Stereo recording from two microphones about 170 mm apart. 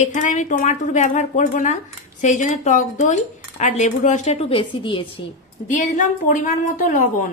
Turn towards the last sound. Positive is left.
turn(degrees=50)  # may be behind; listen again after turning